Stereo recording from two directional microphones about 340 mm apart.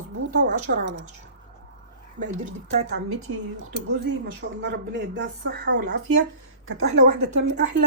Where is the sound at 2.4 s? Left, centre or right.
Right.